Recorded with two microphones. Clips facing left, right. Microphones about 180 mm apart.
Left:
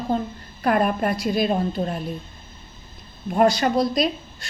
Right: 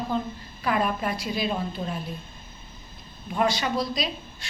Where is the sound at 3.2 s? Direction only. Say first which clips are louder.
Left 7 dB; 45° left (ahead or behind).